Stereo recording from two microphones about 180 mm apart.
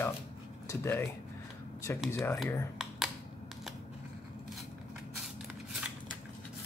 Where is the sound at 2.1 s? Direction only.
15° left (ahead or behind).